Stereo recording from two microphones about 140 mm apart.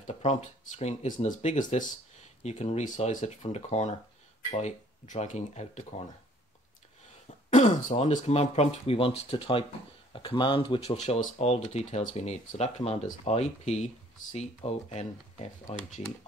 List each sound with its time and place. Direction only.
0.0 s speech: 55° left (ahead or behind)
7.4 s speech: 55° left (ahead or behind)